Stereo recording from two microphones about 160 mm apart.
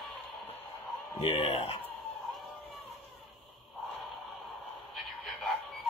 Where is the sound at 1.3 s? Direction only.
40° left (ahead or behind).